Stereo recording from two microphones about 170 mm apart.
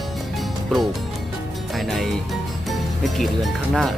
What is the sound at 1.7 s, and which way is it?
Speech, centre (ahead or behind).